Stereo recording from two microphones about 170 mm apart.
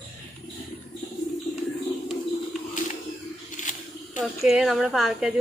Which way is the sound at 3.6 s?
45° left (ahead or behind).